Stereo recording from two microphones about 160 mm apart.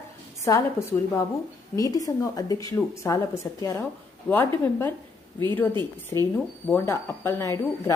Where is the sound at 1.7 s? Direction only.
20° left (ahead or behind).